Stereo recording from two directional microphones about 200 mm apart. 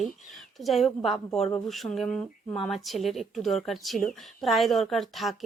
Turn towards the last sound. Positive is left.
turn(degrees=0)  # may be behind; listen again after turning